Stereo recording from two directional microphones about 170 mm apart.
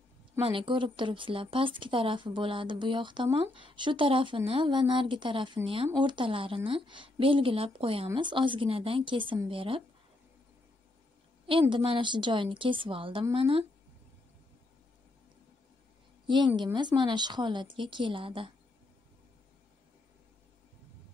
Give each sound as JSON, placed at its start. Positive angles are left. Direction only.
{"t": 0.4, "sound": "speech", "side_deg": -30}
{"t": 11.7, "sound": "speech", "side_deg": -30}
{"t": 16.3, "sound": "speech", "side_deg": -25}